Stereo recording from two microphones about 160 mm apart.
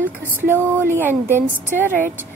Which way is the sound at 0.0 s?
15° left (ahead or behind).